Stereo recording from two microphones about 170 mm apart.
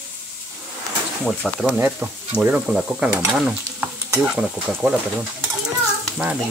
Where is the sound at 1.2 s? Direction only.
Centre (ahead or behind).